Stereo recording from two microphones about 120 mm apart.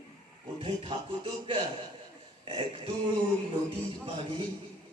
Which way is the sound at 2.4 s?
50° right (ahead or behind).